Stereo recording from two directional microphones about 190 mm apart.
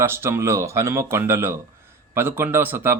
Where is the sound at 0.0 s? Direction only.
15° right (ahead or behind).